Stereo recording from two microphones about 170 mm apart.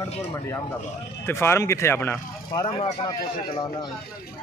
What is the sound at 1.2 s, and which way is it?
Speech, 15° left (ahead or behind).